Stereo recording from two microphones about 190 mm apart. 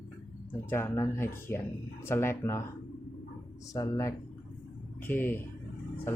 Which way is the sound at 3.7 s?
15° left (ahead or behind).